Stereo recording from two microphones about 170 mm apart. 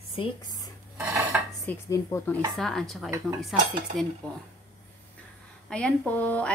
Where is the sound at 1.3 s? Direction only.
10° right (ahead or behind).